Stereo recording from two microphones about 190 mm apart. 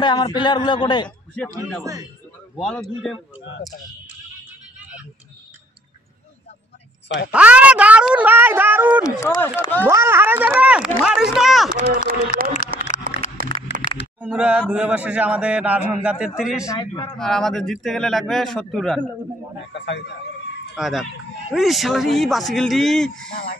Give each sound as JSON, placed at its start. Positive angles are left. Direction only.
{"t": 0.0, "sound": "a man's voice", "side_deg": 20}
{"t": 1.0, "sound": "a man's voice", "side_deg": 5}
{"t": 2.5, "sound": "speech", "side_deg": 5}
{"t": 7.2, "sound": "speech", "side_deg": -5}
{"t": 9.0, "sound": "speech", "side_deg": 15}
{"t": 9.8, "sound": "speech", "side_deg": -15}
{"t": 12.3, "sound": "a sound", "side_deg": 45}
{"t": 13.4, "sound": "a sound", "side_deg": -50}
{"t": 14.2, "sound": "speech", "side_deg": -5}
{"t": 16.6, "sound": "a man's voice", "side_deg": 20}
{"t": 17.2, "sound": "speech", "side_deg": 0}
{"t": 19.7, "sound": "a man's voice", "side_deg": 65}
{"t": 20.7, "sound": "speech", "side_deg": 0}
{"t": 23.3, "sound": "a sound", "side_deg": 50}